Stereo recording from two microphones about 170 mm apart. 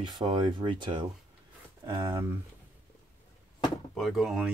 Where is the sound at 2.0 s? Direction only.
15° right (ahead or behind).